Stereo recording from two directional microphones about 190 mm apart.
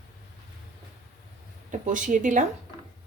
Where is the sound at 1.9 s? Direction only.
45° right (ahead or behind).